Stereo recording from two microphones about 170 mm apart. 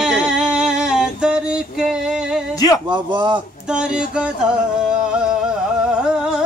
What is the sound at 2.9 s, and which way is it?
Speech, 25° right (ahead or behind).